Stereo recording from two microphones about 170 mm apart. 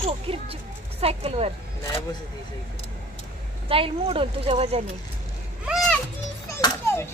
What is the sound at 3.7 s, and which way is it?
Speech, 35° right (ahead or behind).